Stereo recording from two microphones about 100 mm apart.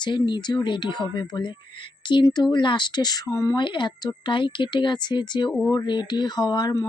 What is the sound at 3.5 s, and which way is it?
Speech, 50° left (ahead or behind).